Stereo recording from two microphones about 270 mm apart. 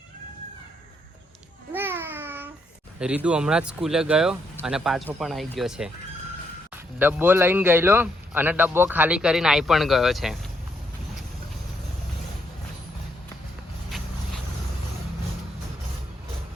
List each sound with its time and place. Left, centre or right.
1.7 s babbling: centre
3.0 s speech: centre
7.0 s speech: centre